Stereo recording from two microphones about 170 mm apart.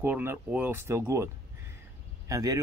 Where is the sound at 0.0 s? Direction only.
15° right (ahead or behind).